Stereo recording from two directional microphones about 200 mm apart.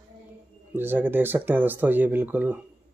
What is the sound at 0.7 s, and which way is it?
Speech, 10° right (ahead or behind).